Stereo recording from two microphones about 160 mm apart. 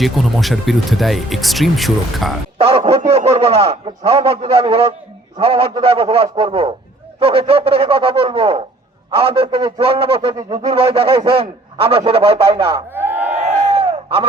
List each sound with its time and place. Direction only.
0.0 s speech: centre (ahead or behind)
2.6 s a man's voice: 35° right (ahead or behind)
12.9 s crowd: 15° right (ahead or behind)
13.4 s a sound: 40° right (ahead or behind)